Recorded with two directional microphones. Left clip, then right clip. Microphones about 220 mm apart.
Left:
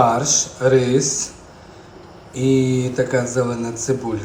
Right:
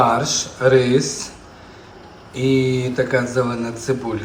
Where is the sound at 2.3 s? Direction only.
10° left (ahead or behind).